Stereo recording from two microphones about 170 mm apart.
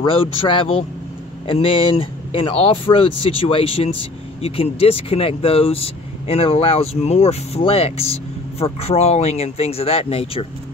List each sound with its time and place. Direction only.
0.0 s speech: 30° left (ahead or behind)